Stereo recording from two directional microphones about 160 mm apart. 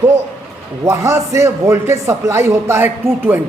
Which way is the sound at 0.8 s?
15° right (ahead or behind).